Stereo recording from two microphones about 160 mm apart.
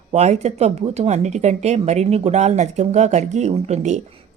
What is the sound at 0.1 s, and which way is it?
Speech, 45° right (ahead or behind).